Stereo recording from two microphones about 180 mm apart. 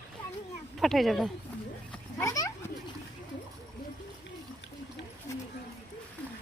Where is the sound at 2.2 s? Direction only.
20° left (ahead or behind).